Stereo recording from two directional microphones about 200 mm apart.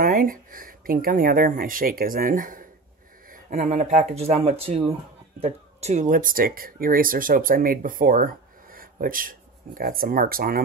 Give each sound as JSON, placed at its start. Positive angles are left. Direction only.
{"t": 0.0, "sound": "speech", "side_deg": -40}